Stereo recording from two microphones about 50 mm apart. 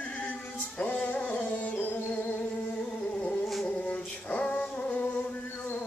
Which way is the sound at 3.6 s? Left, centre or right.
Left.